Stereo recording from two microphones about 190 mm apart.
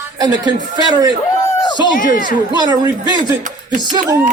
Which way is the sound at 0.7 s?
20° right (ahead or behind).